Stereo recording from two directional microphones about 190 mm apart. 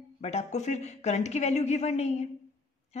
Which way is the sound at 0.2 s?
35° left (ahead or behind).